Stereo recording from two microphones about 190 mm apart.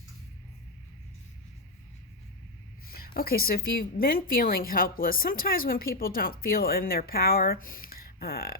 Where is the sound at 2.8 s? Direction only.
50° left (ahead or behind).